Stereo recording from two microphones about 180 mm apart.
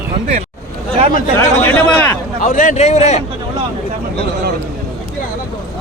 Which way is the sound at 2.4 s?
45° left (ahead or behind).